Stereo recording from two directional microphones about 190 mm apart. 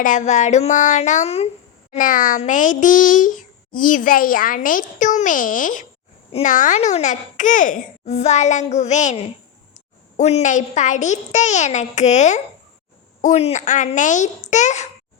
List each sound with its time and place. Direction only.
0.0 s a child's voice: 40° left (ahead or behind)